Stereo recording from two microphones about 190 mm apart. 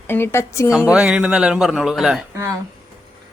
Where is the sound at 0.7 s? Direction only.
5° right (ahead or behind).